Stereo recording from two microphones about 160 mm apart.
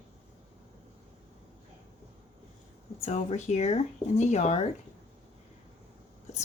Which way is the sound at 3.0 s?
45° left (ahead or behind).